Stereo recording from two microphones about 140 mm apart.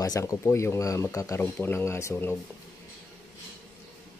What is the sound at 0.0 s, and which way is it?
Speech, 25° left (ahead or behind).